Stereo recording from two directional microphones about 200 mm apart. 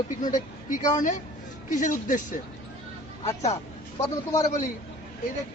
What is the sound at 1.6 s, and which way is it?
Speech, 40° left (ahead or behind).